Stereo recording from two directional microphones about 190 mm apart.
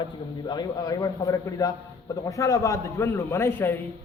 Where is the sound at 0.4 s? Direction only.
20° left (ahead or behind).